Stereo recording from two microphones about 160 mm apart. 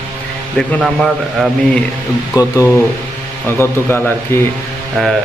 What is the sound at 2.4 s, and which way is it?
A man's voice, 20° left (ahead or behind).